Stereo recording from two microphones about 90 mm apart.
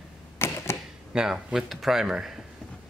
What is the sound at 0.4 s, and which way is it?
Camera, 30° left (ahead or behind).